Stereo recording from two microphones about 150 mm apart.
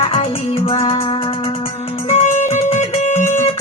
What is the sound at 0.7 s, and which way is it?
Music, 40° left (ahead or behind).